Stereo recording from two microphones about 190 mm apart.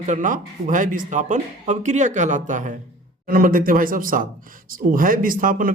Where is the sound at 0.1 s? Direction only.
40° right (ahead or behind).